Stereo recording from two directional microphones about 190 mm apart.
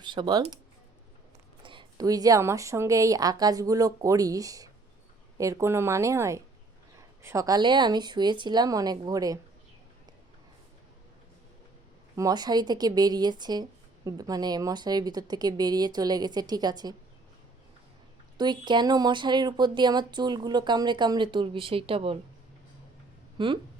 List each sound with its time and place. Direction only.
0.0 s speech: 25° right (ahead or behind)
1.6 s speech: 25° right (ahead or behind)
12.1 s speech: 20° right (ahead or behind)
18.3 s speech: 25° right (ahead or behind)
23.4 s speech: 25° right (ahead or behind)